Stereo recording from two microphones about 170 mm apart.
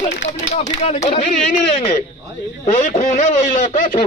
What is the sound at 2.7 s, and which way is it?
Speech, 40° left (ahead or behind).